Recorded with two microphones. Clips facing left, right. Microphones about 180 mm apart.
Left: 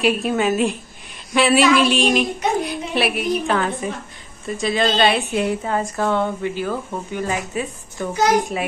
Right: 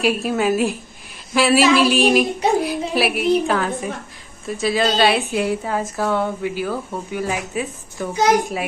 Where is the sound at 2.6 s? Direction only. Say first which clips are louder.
Right 2 dB; centre (ahead or behind).